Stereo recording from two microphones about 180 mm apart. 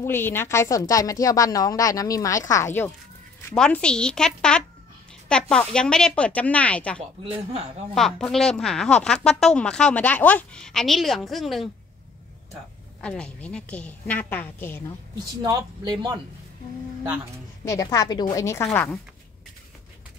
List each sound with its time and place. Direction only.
0.0 s a woman's voice: 10° left (ahead or behind)
7.2 s speech: 35° right (ahead or behind)
7.9 s speech: centre (ahead or behind)
13.0 s a woman's voice: 5° left (ahead or behind)
15.4 s speech: 25° right (ahead or behind)
17.6 s a woman's voice: 20° left (ahead or behind)